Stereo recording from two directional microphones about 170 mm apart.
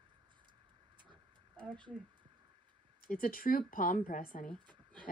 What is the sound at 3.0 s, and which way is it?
A woman's voice, 55° left (ahead or behind).